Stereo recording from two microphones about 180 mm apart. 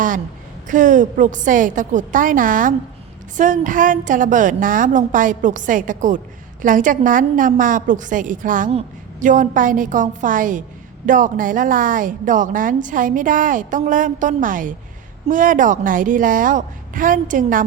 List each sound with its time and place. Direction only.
0.7 s a woman's voice: 45° right (ahead or behind)